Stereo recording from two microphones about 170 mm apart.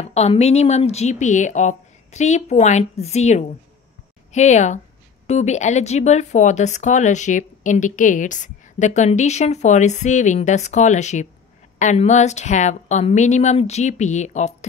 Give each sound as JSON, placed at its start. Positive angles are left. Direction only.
{"t": 0.0, "sound": "speech", "side_deg": 40}